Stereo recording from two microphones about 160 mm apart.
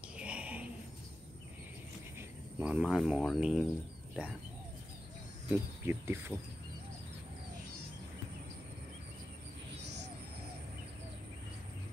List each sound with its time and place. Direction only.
0.2 s a sound: 5° right (ahead or behind)
2.1 s speech: 10° right (ahead or behind)
5.5 s speech: 15° right (ahead or behind)